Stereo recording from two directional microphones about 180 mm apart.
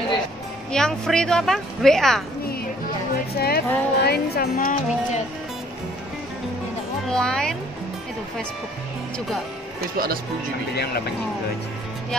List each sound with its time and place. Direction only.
0.7 s speech: 5° left (ahead or behind)
3.3 s a woman's voice: 60° left (ahead or behind)
7.1 s speech: 5° left (ahead or behind)
9.8 s speech: 55° right (ahead or behind)